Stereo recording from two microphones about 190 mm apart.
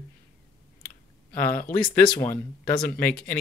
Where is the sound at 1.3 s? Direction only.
10° left (ahead or behind).